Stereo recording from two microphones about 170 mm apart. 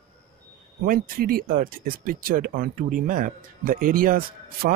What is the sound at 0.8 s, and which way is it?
Speech, 55° right (ahead or behind).